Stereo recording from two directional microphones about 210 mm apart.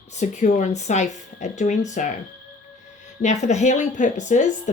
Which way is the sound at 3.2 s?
35° left (ahead or behind).